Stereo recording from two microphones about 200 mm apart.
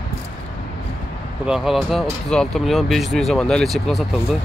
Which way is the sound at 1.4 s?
Centre (ahead or behind).